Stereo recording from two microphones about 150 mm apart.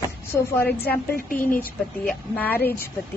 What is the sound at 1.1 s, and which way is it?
Speech, 65° left (ahead or behind).